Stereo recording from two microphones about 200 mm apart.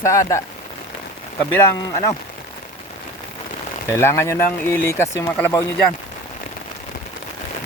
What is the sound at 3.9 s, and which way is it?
Speech, 15° left (ahead or behind).